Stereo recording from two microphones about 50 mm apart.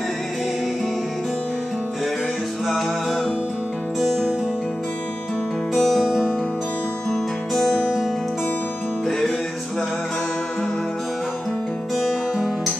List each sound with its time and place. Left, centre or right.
4.0 s music: centre
5.8 s music: centre
7.1 s music: centre
12.0 s music: centre